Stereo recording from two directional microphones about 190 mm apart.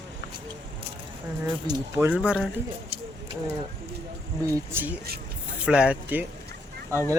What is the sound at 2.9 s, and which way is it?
Vehicle, 30° right (ahead or behind).